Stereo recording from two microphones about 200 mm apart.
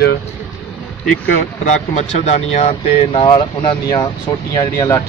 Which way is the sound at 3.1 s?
20° left (ahead or behind).